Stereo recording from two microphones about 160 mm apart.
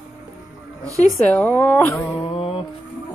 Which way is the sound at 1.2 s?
10° left (ahead or behind).